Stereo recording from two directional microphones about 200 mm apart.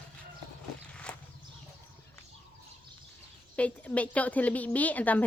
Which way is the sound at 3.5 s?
5° left (ahead or behind).